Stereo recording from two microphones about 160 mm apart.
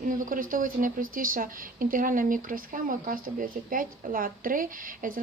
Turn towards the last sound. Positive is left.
turn(degrees=-60)  # may be behind; listen again after turning